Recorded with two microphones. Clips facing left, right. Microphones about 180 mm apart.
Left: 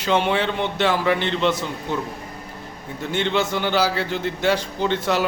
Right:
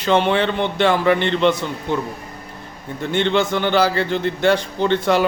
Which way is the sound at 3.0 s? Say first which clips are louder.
Right 4 dB; 5° left (ahead or behind).